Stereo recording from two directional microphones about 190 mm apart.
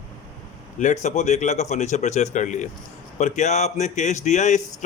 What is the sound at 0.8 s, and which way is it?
Speech, 40° left (ahead or behind).